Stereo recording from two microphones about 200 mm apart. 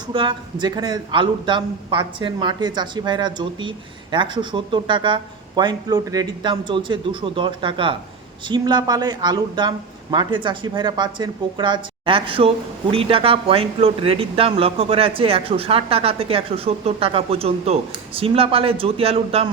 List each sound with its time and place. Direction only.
0.1 s speech: 25° right (ahead or behind)